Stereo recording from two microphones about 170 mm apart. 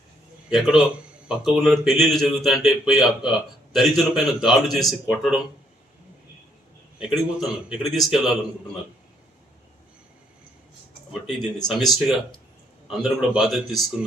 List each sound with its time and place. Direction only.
0.5 s speech: 5° right (ahead or behind)
7.1 s speech: centre (ahead or behind)
11.3 s speech: centre (ahead or behind)